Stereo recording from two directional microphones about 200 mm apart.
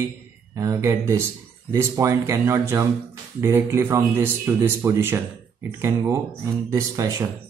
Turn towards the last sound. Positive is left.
turn(degrees=-15)  # may be behind; listen again after turning